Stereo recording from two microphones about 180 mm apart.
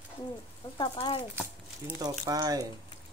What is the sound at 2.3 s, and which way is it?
Speech, 20° right (ahead or behind).